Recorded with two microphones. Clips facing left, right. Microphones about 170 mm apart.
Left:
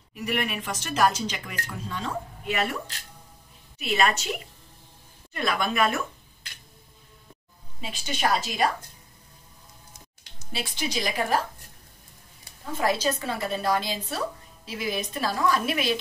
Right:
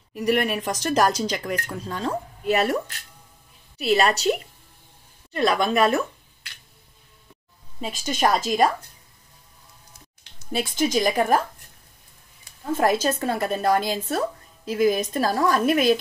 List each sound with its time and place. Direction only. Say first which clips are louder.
0.1 s a woman's voice: right 7 dB; 40° right (ahead or behind)
5.3 s a woman's voice: right 6 dB; 35° right (ahead or behind)
7.8 s a woman's voice: right 5 dB; 45° right (ahead or behind)
10.5 s a woman's voice: right 8 dB; 45° right (ahead or behind)
12.7 s a woman's voice: right 4 dB; 50° right (ahead or behind)